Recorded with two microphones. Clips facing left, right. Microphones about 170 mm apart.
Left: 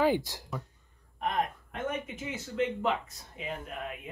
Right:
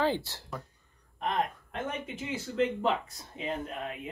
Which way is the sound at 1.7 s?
30° right (ahead or behind).